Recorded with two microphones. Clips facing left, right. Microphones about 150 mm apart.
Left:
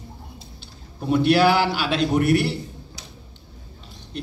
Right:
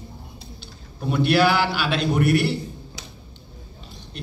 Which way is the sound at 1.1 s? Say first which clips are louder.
Left 2 dB; 35° left (ahead or behind).